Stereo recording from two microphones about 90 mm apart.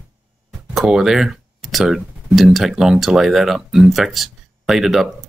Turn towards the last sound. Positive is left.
turn(degrees=-5)  # may be behind; listen again after turning